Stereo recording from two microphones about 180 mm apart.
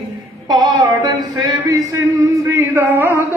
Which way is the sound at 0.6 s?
20° right (ahead or behind).